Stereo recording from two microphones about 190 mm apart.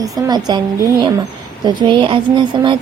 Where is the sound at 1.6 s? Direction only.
25° right (ahead or behind).